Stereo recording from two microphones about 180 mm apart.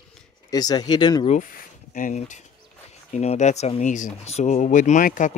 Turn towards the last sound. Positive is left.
turn(degrees=45)  # may be behind; listen again after turning